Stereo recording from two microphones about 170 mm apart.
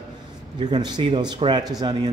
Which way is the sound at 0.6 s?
25° right (ahead or behind).